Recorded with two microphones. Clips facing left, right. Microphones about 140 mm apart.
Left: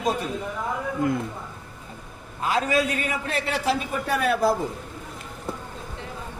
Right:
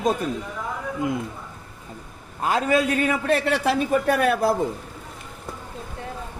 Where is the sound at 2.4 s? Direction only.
50° right (ahead or behind).